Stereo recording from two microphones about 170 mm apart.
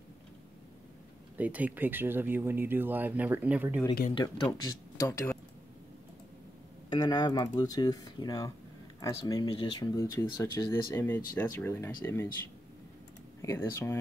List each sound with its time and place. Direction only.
1.4 s speech: 10° right (ahead or behind)
4.1 s speech: 30° left (ahead or behind)
6.9 s speech: 25° left (ahead or behind)
11.0 s speech: 15° left (ahead or behind)
13.4 s speech: 15° left (ahead or behind)